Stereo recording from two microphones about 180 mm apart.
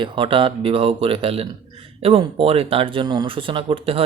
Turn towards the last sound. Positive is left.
turn(degrees=-30)  # may be behind; listen again after turning